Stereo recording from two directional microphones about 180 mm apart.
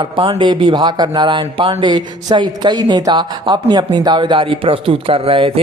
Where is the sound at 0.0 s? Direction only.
30° right (ahead or behind).